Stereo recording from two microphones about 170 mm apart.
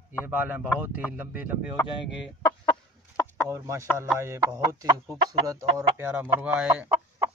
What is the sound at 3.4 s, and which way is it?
Speech, 15° right (ahead or behind).